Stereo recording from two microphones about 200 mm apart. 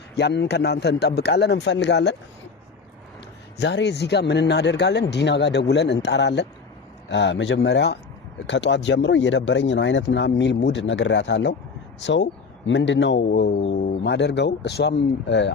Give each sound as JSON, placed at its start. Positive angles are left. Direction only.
{"t": 0.2, "sound": "speech", "side_deg": 55}
{"t": 3.6, "sound": "speech", "side_deg": 60}